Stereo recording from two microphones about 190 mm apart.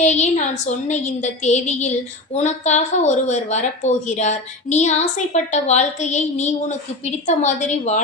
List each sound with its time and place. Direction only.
0.0 s a woman's voice: 35° left (ahead or behind)